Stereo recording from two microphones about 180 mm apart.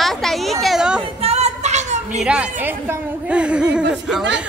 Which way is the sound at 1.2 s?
35° right (ahead or behind).